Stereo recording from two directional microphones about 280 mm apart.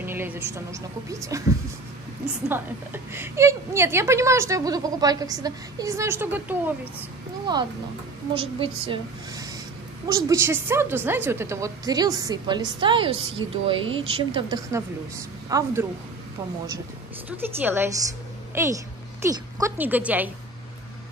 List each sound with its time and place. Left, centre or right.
0.0 s a woman's voice: centre
2.4 s a woman's voice: centre
17.3 s a woman's voice: centre